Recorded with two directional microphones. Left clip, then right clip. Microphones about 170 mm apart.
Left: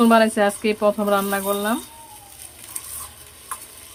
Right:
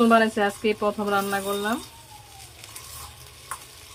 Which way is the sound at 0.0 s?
20° left (ahead or behind).